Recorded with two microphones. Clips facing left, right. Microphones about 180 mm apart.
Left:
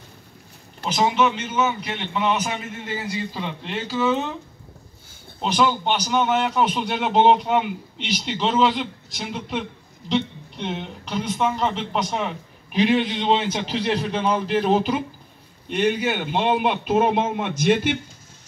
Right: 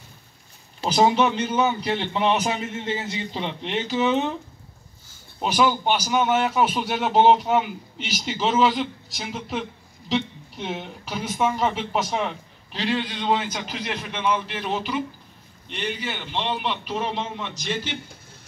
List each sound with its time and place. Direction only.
0.8 s a man's voice: 35° right (ahead or behind); by 4.3 s 20° right (ahead or behind)
5.4 s a man's voice: 5° right (ahead or behind)
12.7 s a man's voice: 20° left (ahead or behind); by 17.9 s 60° left (ahead or behind)